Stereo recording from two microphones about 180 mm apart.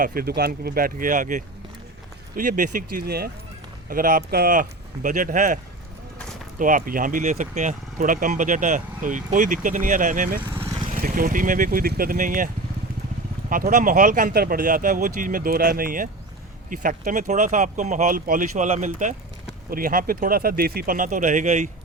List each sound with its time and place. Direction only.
0.0 s speech: 55° right (ahead or behind)
6.6 s speech: 50° right (ahead or behind)
10.5 s vehicle: 15° right (ahead or behind)
10.9 s speech: 50° right (ahead or behind)
13.5 s speech: 50° right (ahead or behind)